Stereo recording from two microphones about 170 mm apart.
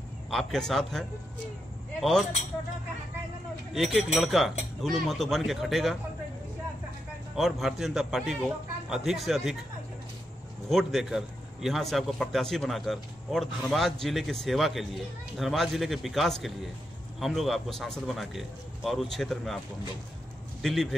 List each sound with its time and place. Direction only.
0.3 s a man's voice: centre (ahead or behind)
3.7 s a man's voice: centre (ahead or behind)
7.3 s a man's voice: centre (ahead or behind)
10.7 s a man's voice: centre (ahead or behind)
20.6 s a man's voice: centre (ahead or behind)